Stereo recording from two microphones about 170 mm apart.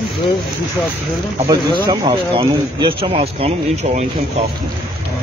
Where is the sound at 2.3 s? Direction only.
35° right (ahead or behind).